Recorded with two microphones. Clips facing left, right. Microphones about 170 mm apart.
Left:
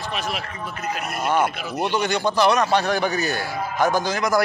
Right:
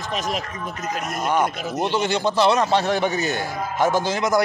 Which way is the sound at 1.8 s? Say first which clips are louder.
Even; 25° right (ahead or behind).